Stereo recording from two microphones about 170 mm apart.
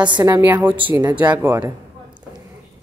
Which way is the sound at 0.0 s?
25° right (ahead or behind).